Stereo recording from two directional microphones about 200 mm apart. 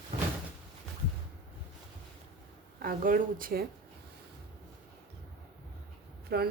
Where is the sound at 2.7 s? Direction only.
45° right (ahead or behind).